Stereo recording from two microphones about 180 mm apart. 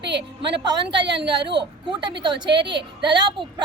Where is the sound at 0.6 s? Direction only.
25° right (ahead or behind).